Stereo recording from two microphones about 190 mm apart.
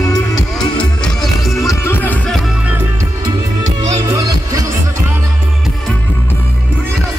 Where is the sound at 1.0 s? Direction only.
Centre (ahead or behind).